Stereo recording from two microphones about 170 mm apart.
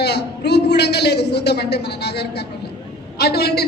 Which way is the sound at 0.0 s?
75° left (ahead or behind).